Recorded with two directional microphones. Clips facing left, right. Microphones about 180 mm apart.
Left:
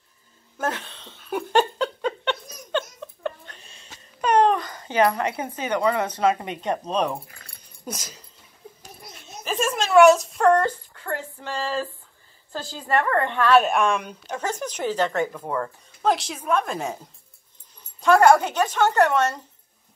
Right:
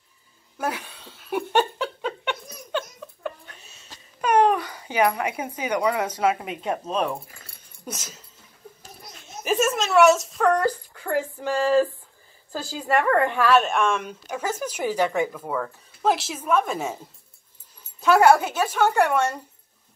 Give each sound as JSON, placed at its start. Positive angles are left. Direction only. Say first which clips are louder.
{"t": 0.6, "sound": "laughter", "louder": "left 1 dB", "side_deg": -10}
{"t": 7.9, "sound": "a woman's voice", "louder": "left 2 dB", "side_deg": -5}
{"t": 9.4, "sound": "a sound", "louder": "right 4 dB", "side_deg": -15}
{"t": 9.7, "sound": "a sound", "louder": "left 4 dB", "side_deg": -5}
{"t": 12.5, "sound": "a woman's voice", "louder": "right 1 dB", "side_deg": -5}
{"t": 18.0, "sound": "a woman's voice", "louder": "left 1 dB", "side_deg": -5}